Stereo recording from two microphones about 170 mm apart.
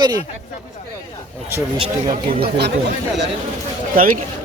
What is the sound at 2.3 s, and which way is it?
Speech, 75° right (ahead or behind).